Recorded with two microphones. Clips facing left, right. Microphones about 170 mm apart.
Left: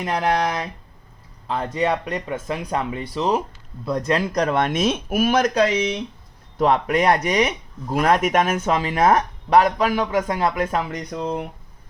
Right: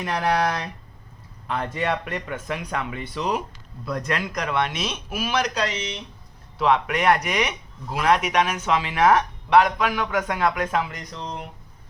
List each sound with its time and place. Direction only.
0.0 s speech: 20° left (ahead or behind)
1.5 s speech: 25° left (ahead or behind)
11.1 s speech: 55° left (ahead or behind)